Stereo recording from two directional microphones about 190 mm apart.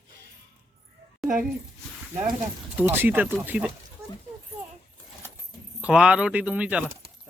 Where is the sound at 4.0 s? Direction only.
15° right (ahead or behind).